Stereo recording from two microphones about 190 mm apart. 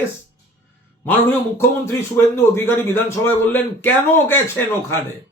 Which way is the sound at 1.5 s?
15° left (ahead or behind).